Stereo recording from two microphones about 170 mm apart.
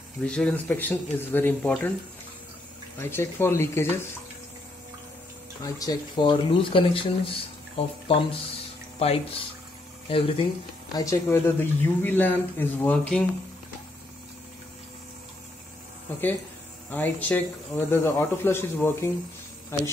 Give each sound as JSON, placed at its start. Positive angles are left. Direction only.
{"t": 0.2, "sound": "speech", "side_deg": 5}
{"t": 3.0, "sound": "speech", "side_deg": 15}
{"t": 5.6, "sound": "speech", "side_deg": 20}
{"t": 11.0, "sound": "speech", "side_deg": 15}
{"t": 16.1, "sound": "speech", "side_deg": 10}